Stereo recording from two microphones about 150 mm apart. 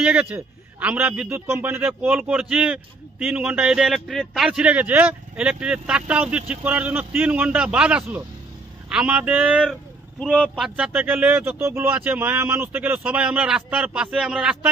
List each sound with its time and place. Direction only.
0.0 s a man's voice: 5° right (ahead or behind)